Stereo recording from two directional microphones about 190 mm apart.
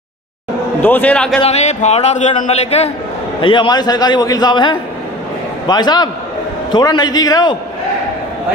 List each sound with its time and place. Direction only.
0.8 s a man's voice: 10° left (ahead or behind)
1.4 s a man's voice: 35° left (ahead or behind)
3.3 s a man's voice: 25° left (ahead or behind)